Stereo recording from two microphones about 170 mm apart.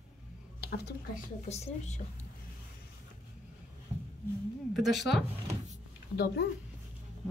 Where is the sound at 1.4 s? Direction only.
40° left (ahead or behind).